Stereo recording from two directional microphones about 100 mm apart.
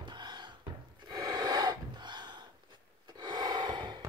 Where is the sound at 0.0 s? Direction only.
50° right (ahead or behind).